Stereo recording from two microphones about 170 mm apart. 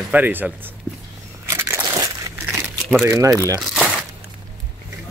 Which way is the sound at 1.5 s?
15° right (ahead or behind).